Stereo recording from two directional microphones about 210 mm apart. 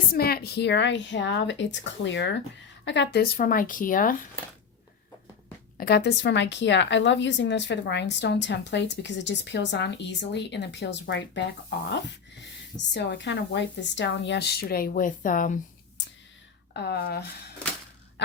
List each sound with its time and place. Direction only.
0.1 s a woman's voice: 45° left (ahead or behind)
5.7 s a woman's voice: 45° left (ahead or behind)
12.9 s a woman's voice: 55° left (ahead or behind); by 15.5 s 40° left (ahead or behind)
16.7 s speech: 50° left (ahead or behind)